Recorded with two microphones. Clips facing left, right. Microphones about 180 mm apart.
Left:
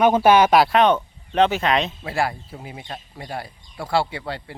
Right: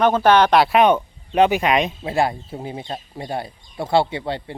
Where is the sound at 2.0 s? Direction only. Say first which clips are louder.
Right 4 dB; 25° right (ahead or behind).